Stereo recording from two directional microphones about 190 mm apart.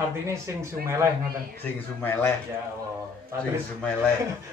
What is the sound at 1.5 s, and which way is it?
Speech, 10° left (ahead or behind).